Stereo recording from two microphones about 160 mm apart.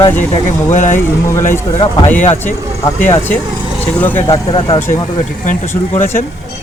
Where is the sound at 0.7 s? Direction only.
50° left (ahead or behind).